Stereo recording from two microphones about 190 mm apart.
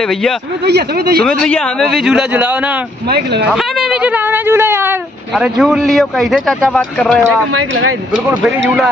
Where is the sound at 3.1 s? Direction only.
60° right (ahead or behind).